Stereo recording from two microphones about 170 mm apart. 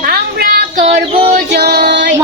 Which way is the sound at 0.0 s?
65° right (ahead or behind).